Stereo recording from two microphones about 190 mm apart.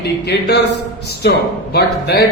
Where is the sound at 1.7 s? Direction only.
60° left (ahead or behind).